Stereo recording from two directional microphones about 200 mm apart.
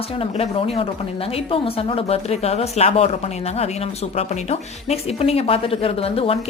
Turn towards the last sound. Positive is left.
turn(degrees=30)  # may be behind; listen again after turning